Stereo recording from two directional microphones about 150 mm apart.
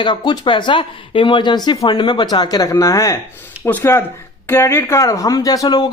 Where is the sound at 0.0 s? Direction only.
30° left (ahead or behind).